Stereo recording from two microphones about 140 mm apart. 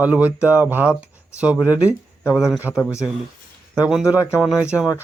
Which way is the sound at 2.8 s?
20° left (ahead or behind).